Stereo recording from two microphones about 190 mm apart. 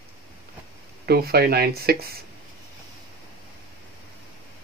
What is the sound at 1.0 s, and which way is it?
Speech, 55° right (ahead or behind).